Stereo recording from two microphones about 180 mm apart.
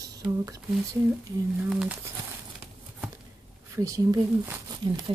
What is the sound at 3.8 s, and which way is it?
Speech, 20° right (ahead or behind).